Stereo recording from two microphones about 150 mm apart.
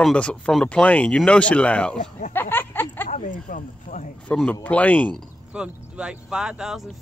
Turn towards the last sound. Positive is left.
turn(degrees=-5)  # may be behind; listen again after turning